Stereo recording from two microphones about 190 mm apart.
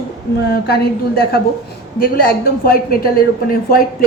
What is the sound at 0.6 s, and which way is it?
A woman's voice, 55° left (ahead or behind).